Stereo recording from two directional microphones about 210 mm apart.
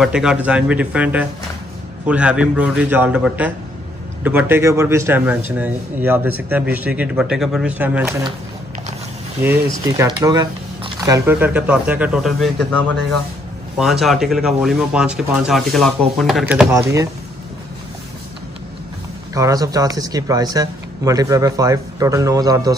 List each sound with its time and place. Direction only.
0.0 s speech: 5° right (ahead or behind)
9.4 s speech: 10° right (ahead or behind)
16.7 s speech: 15° right (ahead or behind)
19.3 s speech: 15° right (ahead or behind)